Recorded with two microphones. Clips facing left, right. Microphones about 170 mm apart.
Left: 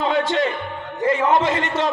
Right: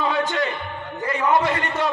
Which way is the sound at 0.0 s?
25° left (ahead or behind).